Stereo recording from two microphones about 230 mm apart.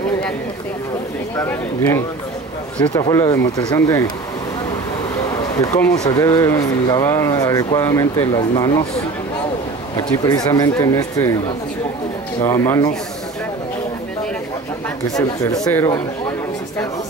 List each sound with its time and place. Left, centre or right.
1.3 s speech: centre
5.6 s speech: centre
9.9 s speech: centre
15.0 s speech: centre